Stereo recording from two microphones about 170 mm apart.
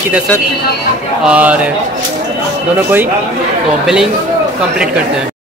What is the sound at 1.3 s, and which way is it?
Speech, 10° right (ahead or behind).